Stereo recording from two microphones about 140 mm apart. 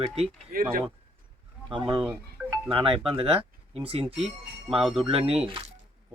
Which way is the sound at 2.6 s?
40° right (ahead or behind).